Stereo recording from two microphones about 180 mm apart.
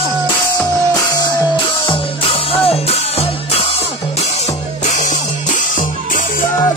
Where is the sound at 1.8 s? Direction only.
30° left (ahead or behind).